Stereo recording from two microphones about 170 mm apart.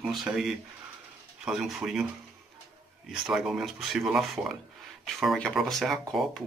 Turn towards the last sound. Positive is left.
turn(degrees=0)  # may be behind; listen again after turning